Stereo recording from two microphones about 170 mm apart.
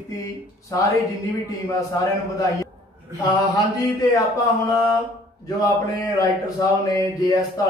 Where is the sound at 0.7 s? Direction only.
20° left (ahead or behind).